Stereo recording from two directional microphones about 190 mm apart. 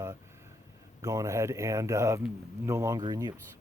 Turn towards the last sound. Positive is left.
turn(degrees=-20)  # may be behind; listen again after turning